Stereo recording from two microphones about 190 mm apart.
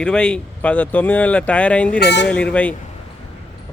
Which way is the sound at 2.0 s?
65° left (ahead or behind).